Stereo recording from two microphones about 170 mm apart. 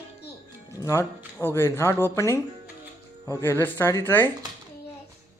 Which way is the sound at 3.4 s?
15° left (ahead or behind).